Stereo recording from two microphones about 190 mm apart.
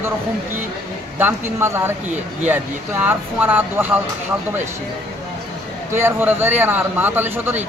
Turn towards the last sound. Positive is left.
turn(degrees=-10)  # may be behind; listen again after turning